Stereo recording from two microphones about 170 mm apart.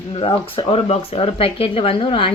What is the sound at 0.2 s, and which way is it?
Speech, 35° left (ahead or behind).